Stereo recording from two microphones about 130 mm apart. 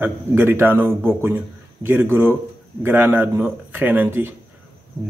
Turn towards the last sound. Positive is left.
turn(degrees=-15)  # may be behind; listen again after turning